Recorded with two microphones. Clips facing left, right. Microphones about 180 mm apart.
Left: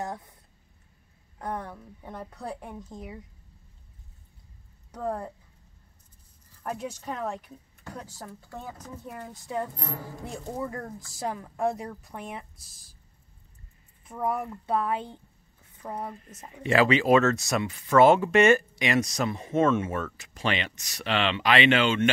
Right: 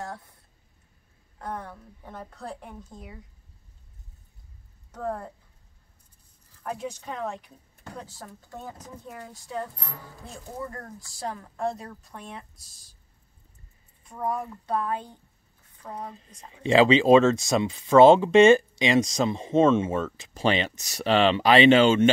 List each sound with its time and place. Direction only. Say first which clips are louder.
1.4 s speech: left 2 dB; 15° left (ahead or behind)
4.9 s speech: left 1 dB; 10° left (ahead or behind)
6.6 s speech: even; 5° left (ahead or behind)
14.2 s speech: left 1 dB; 15° left (ahead or behind)
15.8 s speech: left 2 dB; 25° left (ahead or behind)
16.6 s speech: right 4 dB; 25° right (ahead or behind)